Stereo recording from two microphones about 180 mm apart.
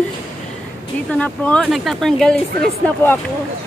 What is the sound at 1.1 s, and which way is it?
A woman's voice, 5° left (ahead or behind).